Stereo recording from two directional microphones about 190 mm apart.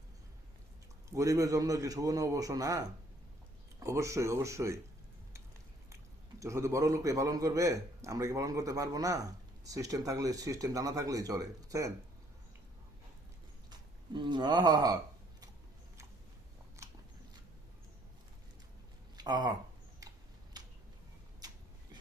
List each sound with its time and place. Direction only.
1.1 s a man's voice: 15° right (ahead or behind)
6.4 s a man's voice: 15° right (ahead or behind)
13.7 s speech: 25° right (ahead or behind)
16.8 s biting: 15° right (ahead or behind)
19.1 s speech: 20° right (ahead or behind)
20.0 s tick-tock: 20° right (ahead or behind)